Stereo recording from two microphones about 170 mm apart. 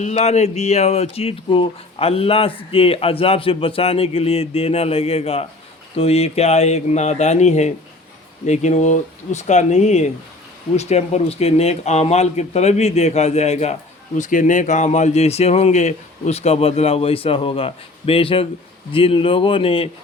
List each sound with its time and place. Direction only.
0.0 s speech: 40° left (ahead or behind)
14.2 s speech: 50° left (ahead or behind); by 19.9 s 35° left (ahead or behind)